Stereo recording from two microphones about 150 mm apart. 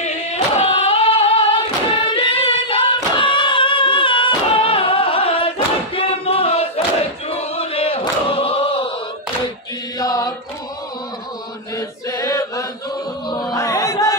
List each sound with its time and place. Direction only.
0.0 s singing: 45° left (ahead or behind)
5.9 s a sound: 40° left (ahead or behind)
8.0 s choir: 35° left (ahead or behind)
9.9 s chant: 25° left (ahead or behind)
11.7 s chant: 20° left (ahead or behind)
13.3 s a sound: 25° left (ahead or behind)